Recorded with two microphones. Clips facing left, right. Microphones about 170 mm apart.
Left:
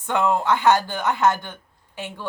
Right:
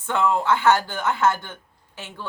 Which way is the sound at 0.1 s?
15° left (ahead or behind).